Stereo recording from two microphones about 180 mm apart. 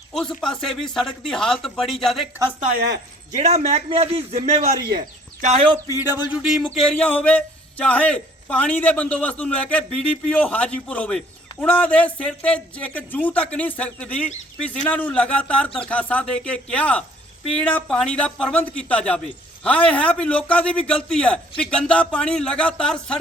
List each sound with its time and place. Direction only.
0.1 s speech: 5° left (ahead or behind)
3.3 s a man's voice: 40° right (ahead or behind)
4.9 s speech: 50° right (ahead or behind)
5.9 s speech: 10° right (ahead or behind)
7.0 s a man's voice: 5° left (ahead or behind)